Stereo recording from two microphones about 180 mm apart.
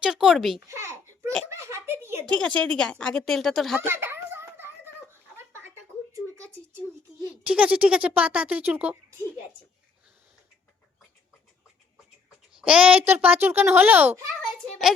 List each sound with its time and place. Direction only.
0.0 s a woman's voice: centre (ahead or behind)
0.7 s babbling: 15° right (ahead or behind)
1.5 s a child's voice: 15° right (ahead or behind)
2.2 s a woman's voice: 5° left (ahead or behind)
3.8 s a sound: 10° right (ahead or behind)
7.4 s speech: 5° right (ahead or behind)
12.5 s a woman's voice: 5° right (ahead or behind)